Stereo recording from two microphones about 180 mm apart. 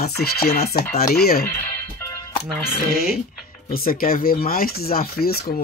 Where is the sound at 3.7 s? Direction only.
55° left (ahead or behind).